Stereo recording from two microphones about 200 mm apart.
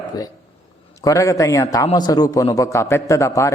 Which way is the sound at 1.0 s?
15° left (ahead or behind).